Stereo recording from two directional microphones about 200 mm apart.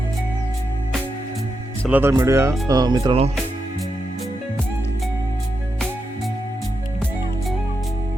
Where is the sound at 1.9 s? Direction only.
10° right (ahead or behind); by 3.3 s 30° right (ahead or behind).